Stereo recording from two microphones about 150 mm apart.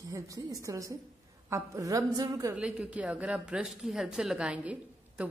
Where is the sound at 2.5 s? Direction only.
5° right (ahead or behind).